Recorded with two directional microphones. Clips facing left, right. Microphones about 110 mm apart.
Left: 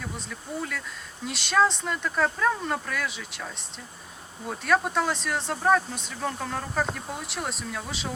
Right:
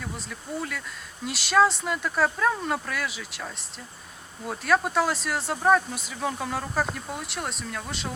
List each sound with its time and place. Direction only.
0.3 s speech: centre (ahead or behind)